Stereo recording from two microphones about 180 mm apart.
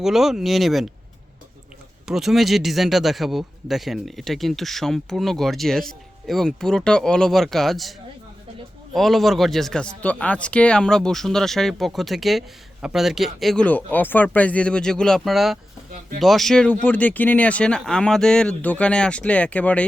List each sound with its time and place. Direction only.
0.0 s speech: centre (ahead or behind)
2.0 s speech: centre (ahead or behind)
9.0 s speech: centre (ahead or behind)
15.9 s speech: 45° right (ahead or behind)
16.2 s speech: centre (ahead or behind)